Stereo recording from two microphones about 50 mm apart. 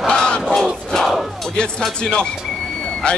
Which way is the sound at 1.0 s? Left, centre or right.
Centre.